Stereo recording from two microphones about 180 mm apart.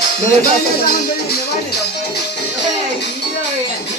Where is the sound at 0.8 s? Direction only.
60° left (ahead or behind).